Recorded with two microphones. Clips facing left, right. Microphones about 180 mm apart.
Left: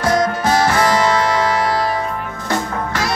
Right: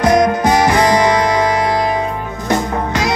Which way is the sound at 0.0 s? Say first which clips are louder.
Right 5 dB; 20° right (ahead or behind).